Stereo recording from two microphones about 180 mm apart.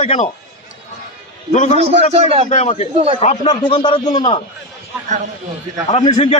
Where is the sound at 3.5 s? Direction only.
30° left (ahead or behind).